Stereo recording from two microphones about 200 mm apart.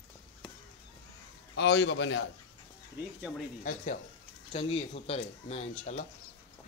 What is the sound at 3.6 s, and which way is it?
Speech, 40° left (ahead or behind).